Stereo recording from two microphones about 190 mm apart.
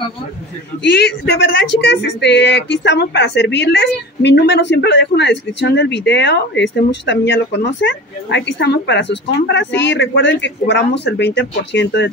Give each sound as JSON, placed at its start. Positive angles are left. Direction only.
{"t": 0.9, "sound": "speech", "side_deg": 60}